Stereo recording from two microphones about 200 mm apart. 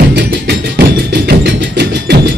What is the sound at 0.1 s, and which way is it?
Music, 55° right (ahead or behind).